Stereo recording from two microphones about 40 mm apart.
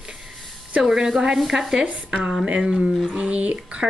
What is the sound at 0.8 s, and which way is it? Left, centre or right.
Speech, centre.